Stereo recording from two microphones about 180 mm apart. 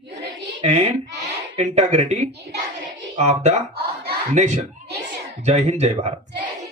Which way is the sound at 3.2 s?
35° right (ahead or behind).